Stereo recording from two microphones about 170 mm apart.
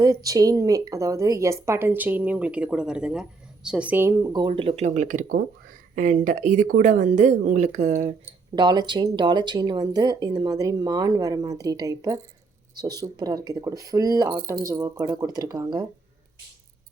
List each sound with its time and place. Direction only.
0.0 s speech: 20° right (ahead or behind); by 8.1 s 45° right (ahead or behind)
8.5 s speech: 25° right (ahead or behind)